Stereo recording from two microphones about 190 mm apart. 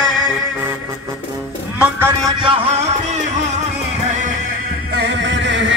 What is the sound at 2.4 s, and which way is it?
Music, 30° right (ahead or behind).